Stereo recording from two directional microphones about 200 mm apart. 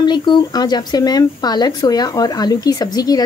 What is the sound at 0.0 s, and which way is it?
Speech, 20° left (ahead or behind).